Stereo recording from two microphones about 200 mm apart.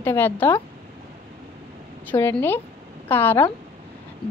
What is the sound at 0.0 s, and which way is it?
Speech, 10° left (ahead or behind).